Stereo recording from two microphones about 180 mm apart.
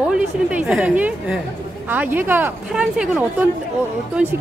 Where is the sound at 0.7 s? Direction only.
5° right (ahead or behind).